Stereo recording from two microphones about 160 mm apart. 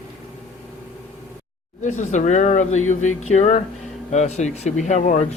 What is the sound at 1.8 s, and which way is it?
Speech, 50° left (ahead or behind).